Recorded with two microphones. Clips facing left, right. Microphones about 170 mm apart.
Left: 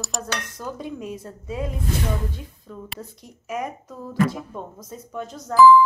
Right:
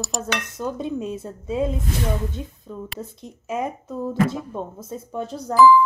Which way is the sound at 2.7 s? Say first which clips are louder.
Right 4 dB; 20° right (ahead or behind).